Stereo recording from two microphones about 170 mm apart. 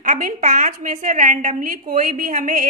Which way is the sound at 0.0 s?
50° right (ahead or behind).